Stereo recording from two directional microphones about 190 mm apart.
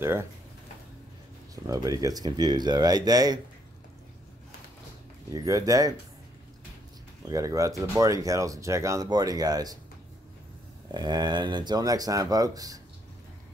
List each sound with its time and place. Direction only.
0.0 s speech: 15° right (ahead or behind)
1.5 s speech: 20° right (ahead or behind)
5.3 s speech: 20° right (ahead or behind)
7.2 s speech: 15° right (ahead or behind)
10.9 s speech: 20° right (ahead or behind)